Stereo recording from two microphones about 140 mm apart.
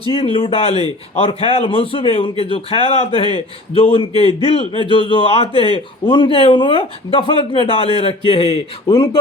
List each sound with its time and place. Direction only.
0.1 s a man's voice: 40° left (ahead or behind)